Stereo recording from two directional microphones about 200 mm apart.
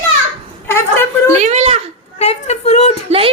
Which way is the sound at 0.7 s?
10° left (ahead or behind).